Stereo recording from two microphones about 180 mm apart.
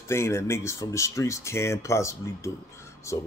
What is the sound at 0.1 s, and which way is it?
Speech, 15° left (ahead or behind).